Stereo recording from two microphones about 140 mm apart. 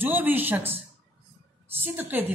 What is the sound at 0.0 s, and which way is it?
Speech, 15° right (ahead or behind).